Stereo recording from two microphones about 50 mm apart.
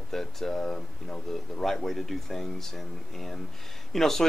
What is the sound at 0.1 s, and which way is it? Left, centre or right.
Speech, centre.